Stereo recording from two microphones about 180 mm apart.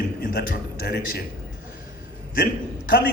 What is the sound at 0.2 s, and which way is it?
Speech, 60° left (ahead or behind).